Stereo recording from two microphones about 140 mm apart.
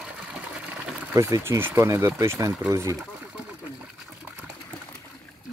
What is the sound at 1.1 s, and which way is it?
Speech, 20° right (ahead or behind).